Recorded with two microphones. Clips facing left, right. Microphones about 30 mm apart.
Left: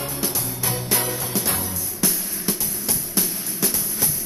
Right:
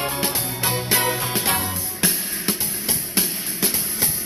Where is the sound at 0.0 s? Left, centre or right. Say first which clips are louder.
Right 3 dB; right.